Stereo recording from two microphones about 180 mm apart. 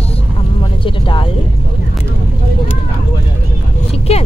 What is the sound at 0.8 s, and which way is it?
Speech, 30° left (ahead or behind).